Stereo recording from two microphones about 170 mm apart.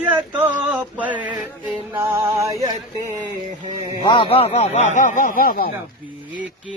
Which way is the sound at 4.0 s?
30° left (ahead or behind).